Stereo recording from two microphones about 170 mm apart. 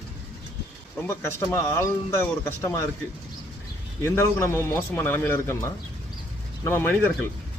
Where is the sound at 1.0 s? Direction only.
15° left (ahead or behind).